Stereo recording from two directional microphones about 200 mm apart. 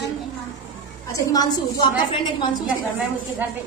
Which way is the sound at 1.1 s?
20° left (ahead or behind).